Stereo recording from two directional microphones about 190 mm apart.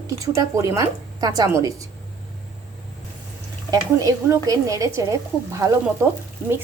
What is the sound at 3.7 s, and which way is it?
A woman's voice, 20° right (ahead or behind).